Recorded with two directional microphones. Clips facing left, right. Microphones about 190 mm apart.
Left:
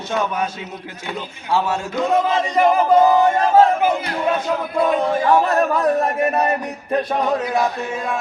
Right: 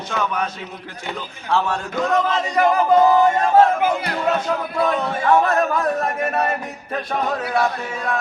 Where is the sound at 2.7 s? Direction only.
Centre (ahead or behind).